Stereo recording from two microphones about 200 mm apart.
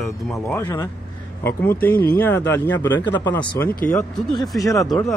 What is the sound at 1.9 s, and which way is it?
Speech, 50° left (ahead or behind).